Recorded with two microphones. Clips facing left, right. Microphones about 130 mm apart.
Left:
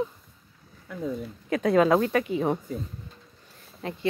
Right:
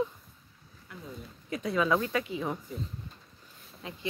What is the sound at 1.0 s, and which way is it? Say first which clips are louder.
Speech: left 14 dB; 65° left (ahead or behind).